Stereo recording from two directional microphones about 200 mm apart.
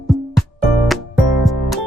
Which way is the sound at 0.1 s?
Centre (ahead or behind).